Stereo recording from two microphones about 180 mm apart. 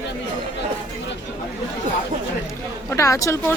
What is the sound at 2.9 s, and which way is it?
Speech, 15° left (ahead or behind).